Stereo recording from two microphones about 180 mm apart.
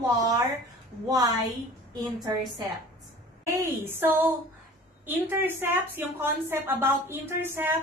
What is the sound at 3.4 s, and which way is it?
A woman's voice, 15° right (ahead or behind).